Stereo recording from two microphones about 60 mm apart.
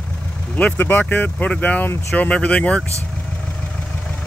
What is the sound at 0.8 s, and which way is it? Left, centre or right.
Speech, left.